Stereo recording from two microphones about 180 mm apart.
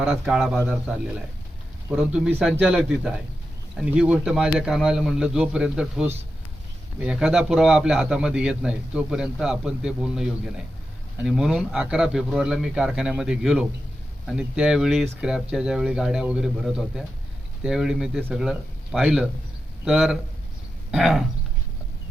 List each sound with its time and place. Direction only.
0.0 s a man's voice: 5° right (ahead or behind)